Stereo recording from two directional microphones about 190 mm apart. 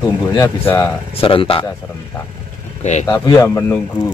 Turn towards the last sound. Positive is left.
turn(degrees=15)  # may be behind; listen again after turning